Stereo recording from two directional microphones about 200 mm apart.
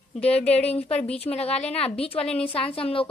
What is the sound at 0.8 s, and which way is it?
A woman's voice, 30° left (ahead or behind).